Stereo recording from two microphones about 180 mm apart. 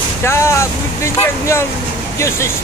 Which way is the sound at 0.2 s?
15° left (ahead or behind).